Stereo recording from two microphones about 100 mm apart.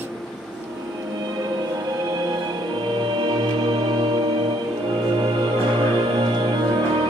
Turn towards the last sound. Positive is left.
turn(degrees=-50)  # may be behind; listen again after turning